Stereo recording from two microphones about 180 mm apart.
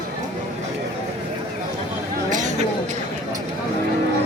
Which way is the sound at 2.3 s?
45° right (ahead or behind).